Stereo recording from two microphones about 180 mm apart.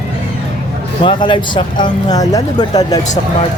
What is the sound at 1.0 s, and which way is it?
Speech, 25° left (ahead or behind).